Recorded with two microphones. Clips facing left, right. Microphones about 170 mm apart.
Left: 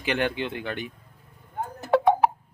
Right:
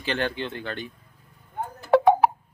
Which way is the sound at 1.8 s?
5° right (ahead or behind).